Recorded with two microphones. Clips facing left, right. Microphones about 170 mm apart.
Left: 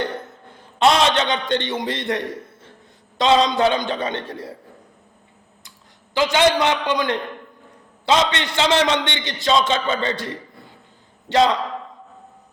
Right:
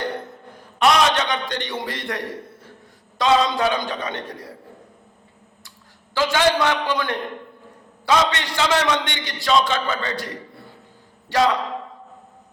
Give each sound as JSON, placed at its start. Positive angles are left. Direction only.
{"t": 0.5, "sound": "a man's voice", "side_deg": 25}
{"t": 6.1, "sound": "a man's voice", "side_deg": 20}
{"t": 11.3, "sound": "a man's voice", "side_deg": 20}